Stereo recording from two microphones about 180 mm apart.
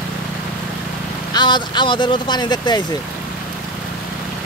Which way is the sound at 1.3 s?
25° left (ahead or behind).